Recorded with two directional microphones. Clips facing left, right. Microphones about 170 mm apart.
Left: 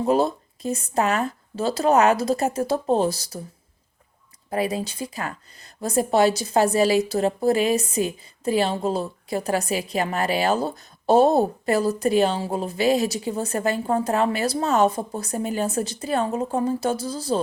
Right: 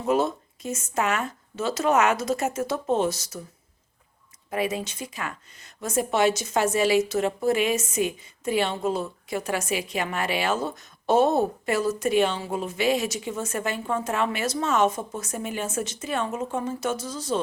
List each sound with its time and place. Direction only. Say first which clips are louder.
0.0 s a woman's voice: left 3 dB; 35° left (ahead or behind)
4.4 s a woman's voice: left 3 dB; 35° left (ahead or behind)